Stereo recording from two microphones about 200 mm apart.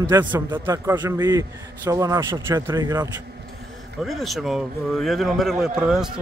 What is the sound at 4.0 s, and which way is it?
Speech, centre (ahead or behind).